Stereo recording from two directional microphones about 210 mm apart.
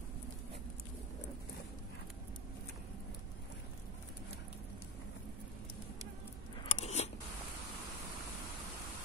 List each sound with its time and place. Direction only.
6.6 s biting: 30° left (ahead or behind)